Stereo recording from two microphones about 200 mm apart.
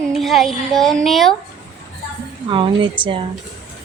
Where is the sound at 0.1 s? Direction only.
Centre (ahead or behind).